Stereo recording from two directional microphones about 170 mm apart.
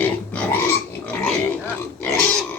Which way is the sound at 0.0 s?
10° left (ahead or behind).